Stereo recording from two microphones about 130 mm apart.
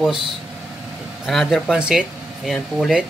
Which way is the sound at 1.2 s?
Centre (ahead or behind).